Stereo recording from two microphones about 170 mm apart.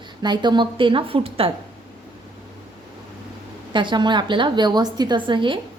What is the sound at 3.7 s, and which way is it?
A woman's voice, 25° right (ahead or behind).